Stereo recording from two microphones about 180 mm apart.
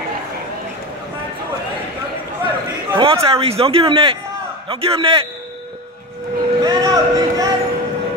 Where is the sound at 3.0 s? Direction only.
30° right (ahead or behind).